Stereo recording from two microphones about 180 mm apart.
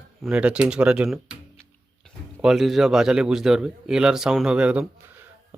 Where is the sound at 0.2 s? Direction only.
5° right (ahead or behind).